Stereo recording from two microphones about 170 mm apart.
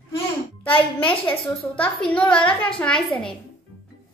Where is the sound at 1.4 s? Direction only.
10° left (ahead or behind).